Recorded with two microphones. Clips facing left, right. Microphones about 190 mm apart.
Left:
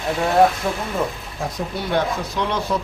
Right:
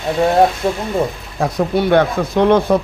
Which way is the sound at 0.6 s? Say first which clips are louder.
Right 6 dB; 30° right (ahead or behind).